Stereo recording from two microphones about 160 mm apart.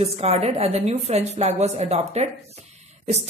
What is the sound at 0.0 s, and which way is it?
A woman's voice, 40° right (ahead or behind).